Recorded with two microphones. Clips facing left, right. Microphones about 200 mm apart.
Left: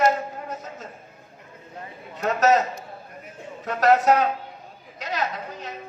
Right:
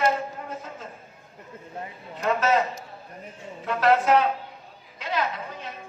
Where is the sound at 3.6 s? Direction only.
40° left (ahead or behind).